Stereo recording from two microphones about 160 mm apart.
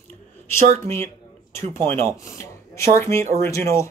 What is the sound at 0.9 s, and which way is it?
Speech, 15° left (ahead or behind).